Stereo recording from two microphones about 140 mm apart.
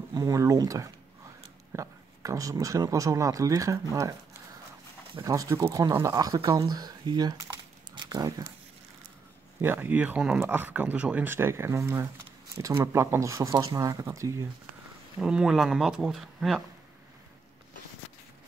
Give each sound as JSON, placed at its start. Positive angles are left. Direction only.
{"t": 0.1, "sound": "a man's voice", "side_deg": -25}
{"t": 5.2, "sound": "speech", "side_deg": -25}
{"t": 7.9, "sound": "a sound", "side_deg": -30}
{"t": 9.6, "sound": "speech", "side_deg": -15}
{"t": 15.1, "sound": "speech", "side_deg": -5}